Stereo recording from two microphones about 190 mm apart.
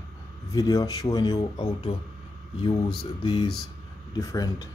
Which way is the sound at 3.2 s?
25° left (ahead or behind).